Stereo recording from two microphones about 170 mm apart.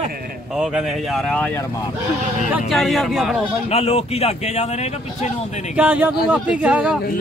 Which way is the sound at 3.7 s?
35° left (ahead or behind).